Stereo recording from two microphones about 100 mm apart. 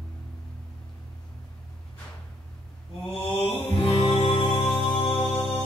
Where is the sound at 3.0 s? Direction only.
65° left (ahead or behind).